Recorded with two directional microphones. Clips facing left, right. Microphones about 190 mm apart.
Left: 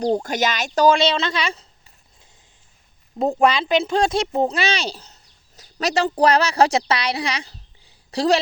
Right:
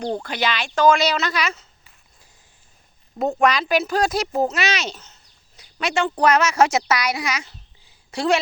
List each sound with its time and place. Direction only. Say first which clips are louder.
0.0 s speech: left 4 dB; 40° left (ahead or behind)
3.4 s a woman's voice: left 1 dB; 30° left (ahead or behind)